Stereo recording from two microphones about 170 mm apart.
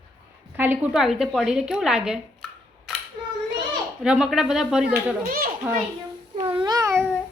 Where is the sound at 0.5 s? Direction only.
10° right (ahead or behind).